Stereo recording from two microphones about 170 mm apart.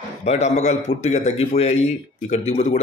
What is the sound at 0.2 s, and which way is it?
A man's voice, 40° left (ahead or behind).